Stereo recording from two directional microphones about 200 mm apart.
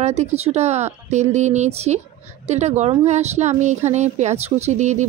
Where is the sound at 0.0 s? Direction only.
35° right (ahead or behind).